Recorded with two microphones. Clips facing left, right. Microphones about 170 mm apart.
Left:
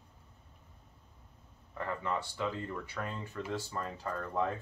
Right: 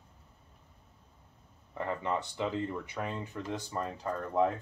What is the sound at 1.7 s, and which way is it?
Speech, 20° right (ahead or behind).